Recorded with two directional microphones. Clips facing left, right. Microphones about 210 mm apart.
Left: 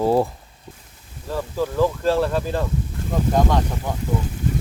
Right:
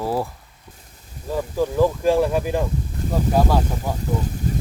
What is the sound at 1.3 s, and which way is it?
Speech, 15° right (ahead or behind).